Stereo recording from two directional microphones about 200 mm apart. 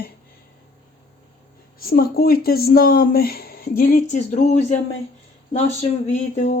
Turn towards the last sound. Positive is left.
turn(degrees=35)  # may be behind; listen again after turning